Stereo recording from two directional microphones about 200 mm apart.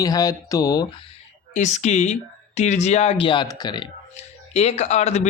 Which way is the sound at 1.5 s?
35° left (ahead or behind).